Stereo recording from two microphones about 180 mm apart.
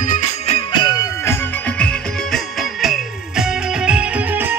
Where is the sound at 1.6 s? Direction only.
5° left (ahead or behind).